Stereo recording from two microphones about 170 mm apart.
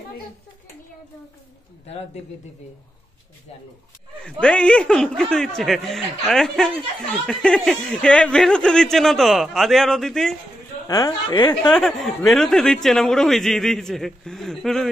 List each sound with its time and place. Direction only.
4.3 s speech: 5° left (ahead or behind)
10.9 s speech: 25° left (ahead or behind)
11.6 s speech: 5° left (ahead or behind)